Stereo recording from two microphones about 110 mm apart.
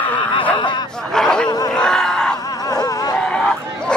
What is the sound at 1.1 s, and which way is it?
Snicker, 5° left (ahead or behind).